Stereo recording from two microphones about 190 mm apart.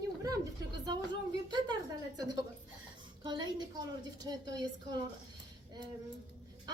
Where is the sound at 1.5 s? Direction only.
20° right (ahead or behind).